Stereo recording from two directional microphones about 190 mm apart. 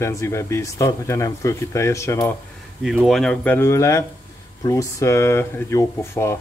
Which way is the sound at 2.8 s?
Centre (ahead or behind).